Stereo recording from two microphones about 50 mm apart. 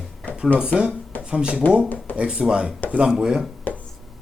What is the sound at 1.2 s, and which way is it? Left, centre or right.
Speech, right.